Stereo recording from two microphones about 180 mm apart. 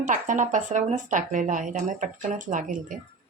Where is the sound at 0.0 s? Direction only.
45° right (ahead or behind).